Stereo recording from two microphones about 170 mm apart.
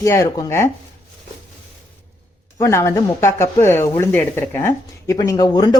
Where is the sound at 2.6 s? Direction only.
15° left (ahead or behind).